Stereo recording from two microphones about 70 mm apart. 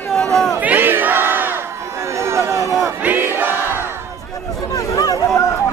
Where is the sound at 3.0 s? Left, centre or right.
Right.